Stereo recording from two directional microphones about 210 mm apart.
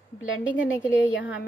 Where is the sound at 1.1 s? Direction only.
60° left (ahead or behind).